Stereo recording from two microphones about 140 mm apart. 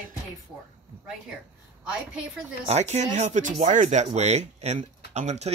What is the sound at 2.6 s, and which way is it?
Speech, 50° right (ahead or behind).